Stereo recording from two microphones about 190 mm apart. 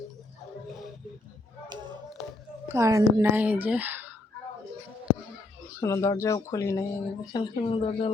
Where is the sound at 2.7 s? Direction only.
15° right (ahead or behind).